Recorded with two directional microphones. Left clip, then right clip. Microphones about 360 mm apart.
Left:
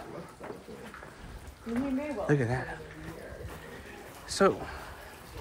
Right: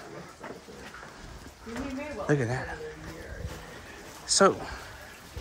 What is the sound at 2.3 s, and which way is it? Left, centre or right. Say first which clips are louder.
Speech: right 2 dB; centre.